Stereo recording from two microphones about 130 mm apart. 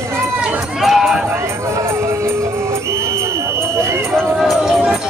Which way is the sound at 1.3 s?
20° right (ahead or behind).